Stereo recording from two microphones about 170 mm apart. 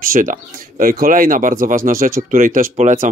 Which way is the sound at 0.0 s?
55° right (ahead or behind).